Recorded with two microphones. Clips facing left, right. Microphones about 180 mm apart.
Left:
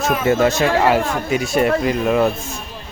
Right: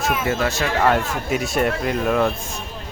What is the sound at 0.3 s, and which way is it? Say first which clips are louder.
Speech: left 11 dB; 25° left (ahead or behind).